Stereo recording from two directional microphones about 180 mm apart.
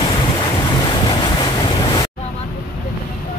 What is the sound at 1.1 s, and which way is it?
Waves, 25° left (ahead or behind).